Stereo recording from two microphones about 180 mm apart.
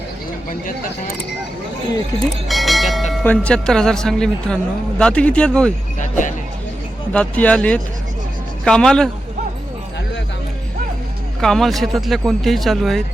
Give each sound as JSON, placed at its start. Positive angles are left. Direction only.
{"t": 2.5, "sound": "speech", "side_deg": 0}
{"t": 6.0, "sound": "music", "side_deg": 45}
{"t": 7.1, "sound": "speech", "side_deg": 10}
{"t": 11.3, "sound": "speech", "side_deg": 0}